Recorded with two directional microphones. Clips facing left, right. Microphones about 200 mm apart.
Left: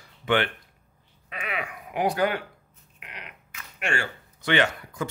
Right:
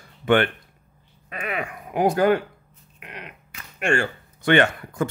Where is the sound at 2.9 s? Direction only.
45° right (ahead or behind).